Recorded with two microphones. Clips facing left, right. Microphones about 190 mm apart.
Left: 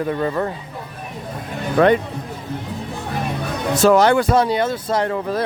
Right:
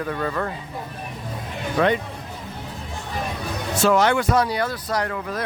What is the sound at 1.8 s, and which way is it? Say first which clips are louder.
Speech: left 6 dB; 55° left (ahead or behind).